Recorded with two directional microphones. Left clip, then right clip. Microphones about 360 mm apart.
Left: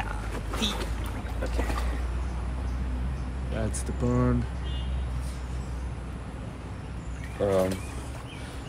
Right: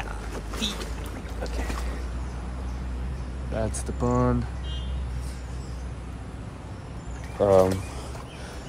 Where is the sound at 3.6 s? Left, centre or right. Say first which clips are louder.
Right 3 dB; centre.